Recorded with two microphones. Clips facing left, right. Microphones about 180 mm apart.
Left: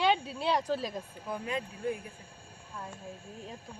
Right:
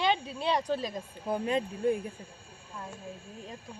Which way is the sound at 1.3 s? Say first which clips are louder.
Right 6 dB; 30° right (ahead or behind).